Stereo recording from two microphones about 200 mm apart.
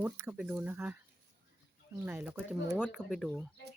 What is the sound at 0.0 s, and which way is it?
Speech, 10° right (ahead or behind).